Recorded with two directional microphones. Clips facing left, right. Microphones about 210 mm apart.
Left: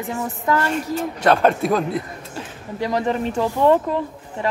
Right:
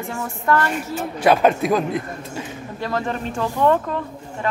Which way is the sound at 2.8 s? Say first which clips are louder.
Left 4 dB; 15° left (ahead or behind).